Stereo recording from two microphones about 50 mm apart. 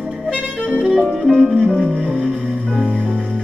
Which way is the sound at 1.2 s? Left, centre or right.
Centre.